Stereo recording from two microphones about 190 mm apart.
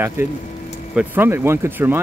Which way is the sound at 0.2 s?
10° right (ahead or behind).